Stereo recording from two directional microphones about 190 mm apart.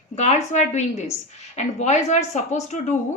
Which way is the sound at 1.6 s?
35° left (ahead or behind).